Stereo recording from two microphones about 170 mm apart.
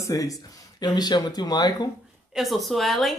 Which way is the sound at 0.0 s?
20° left (ahead or behind).